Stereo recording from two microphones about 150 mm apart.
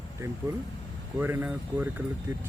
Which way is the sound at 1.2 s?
10° right (ahead or behind).